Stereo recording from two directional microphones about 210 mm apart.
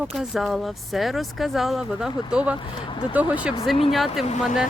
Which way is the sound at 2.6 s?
25° left (ahead or behind).